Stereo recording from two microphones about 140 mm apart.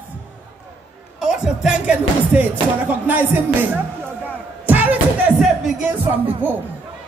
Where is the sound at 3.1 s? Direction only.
15° right (ahead or behind).